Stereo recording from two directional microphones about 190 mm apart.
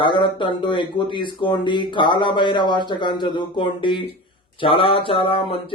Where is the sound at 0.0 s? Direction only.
25° left (ahead or behind).